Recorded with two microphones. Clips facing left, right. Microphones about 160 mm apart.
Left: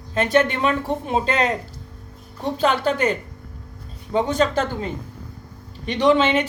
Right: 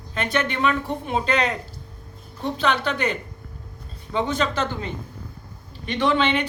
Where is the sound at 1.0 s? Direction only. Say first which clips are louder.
Left 3 dB; 30° left (ahead or behind).